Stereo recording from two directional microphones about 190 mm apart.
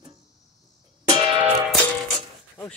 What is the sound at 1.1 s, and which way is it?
Music, 25° right (ahead or behind).